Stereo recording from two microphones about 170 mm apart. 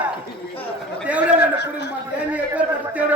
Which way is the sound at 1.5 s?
75° left (ahead or behind).